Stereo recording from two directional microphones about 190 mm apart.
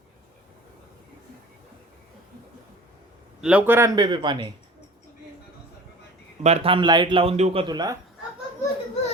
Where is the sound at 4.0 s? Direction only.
25° right (ahead or behind).